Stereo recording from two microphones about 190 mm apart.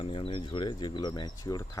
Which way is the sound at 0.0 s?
30° left (ahead or behind).